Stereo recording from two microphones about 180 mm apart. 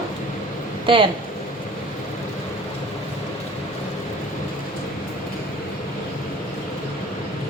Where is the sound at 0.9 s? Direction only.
30° right (ahead or behind).